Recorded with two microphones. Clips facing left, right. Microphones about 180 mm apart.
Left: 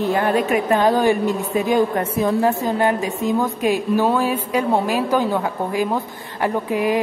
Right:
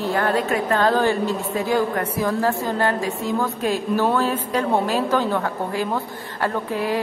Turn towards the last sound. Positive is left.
turn(degrees=15)  # may be behind; listen again after turning